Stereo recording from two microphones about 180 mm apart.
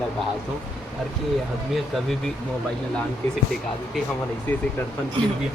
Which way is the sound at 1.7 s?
5° left (ahead or behind).